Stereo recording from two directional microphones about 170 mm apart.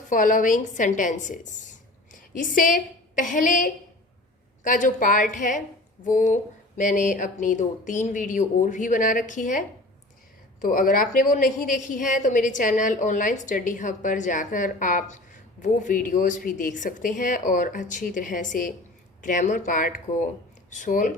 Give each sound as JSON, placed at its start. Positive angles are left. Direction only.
{"t": 0.1, "sound": "a woman's voice", "side_deg": 50}